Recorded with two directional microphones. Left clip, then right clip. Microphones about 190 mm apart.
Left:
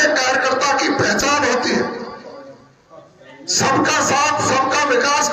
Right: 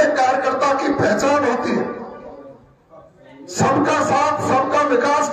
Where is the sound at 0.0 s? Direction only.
60° right (ahead or behind).